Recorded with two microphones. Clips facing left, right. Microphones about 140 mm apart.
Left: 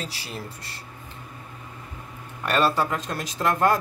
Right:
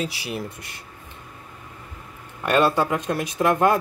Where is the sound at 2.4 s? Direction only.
15° right (ahead or behind).